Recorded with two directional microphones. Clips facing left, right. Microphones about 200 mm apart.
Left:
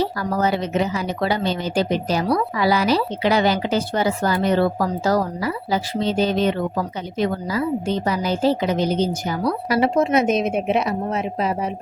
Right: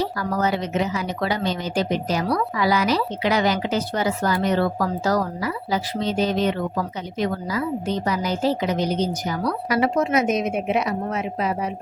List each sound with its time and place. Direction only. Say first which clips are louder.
0.0 s a woman's voice: left 2 dB; 30° left (ahead or behind)